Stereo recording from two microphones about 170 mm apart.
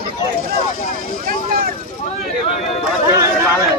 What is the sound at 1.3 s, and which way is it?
Vehicle, 60° right (ahead or behind).